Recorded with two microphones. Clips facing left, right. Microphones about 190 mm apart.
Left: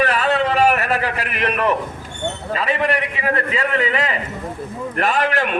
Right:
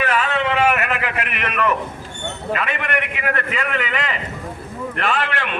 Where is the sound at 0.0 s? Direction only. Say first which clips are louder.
Left 3 dB; 35° left (ahead or behind).